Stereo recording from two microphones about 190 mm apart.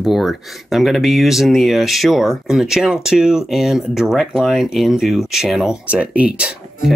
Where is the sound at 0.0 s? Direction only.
Centre (ahead or behind).